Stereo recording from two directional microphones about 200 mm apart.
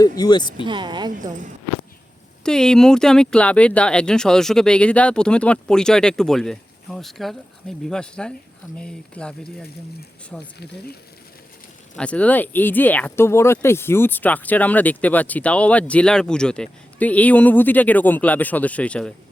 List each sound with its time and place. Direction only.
0.0 s speech: 20° left (ahead or behind)
0.6 s speech: 25° right (ahead or behind)
1.2 s speech: 40° right (ahead or behind)
2.4 s speech: 5° left (ahead or behind)
11.9 s speech: 5° left (ahead or behind)